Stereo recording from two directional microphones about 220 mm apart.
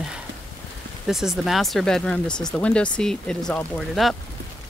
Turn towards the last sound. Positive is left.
turn(degrees=0)  # may be behind; listen again after turning